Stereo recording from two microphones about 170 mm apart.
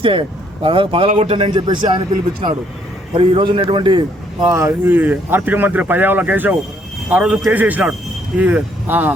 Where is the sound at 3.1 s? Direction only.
30° right (ahead or behind).